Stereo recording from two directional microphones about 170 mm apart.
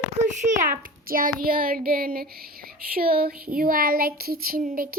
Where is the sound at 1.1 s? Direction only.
55° right (ahead or behind).